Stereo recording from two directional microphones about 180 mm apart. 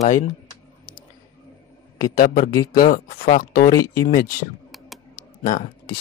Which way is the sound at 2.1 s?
50° left (ahead or behind).